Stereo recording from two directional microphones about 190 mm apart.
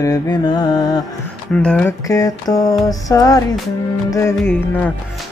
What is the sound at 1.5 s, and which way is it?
Music, 5° left (ahead or behind).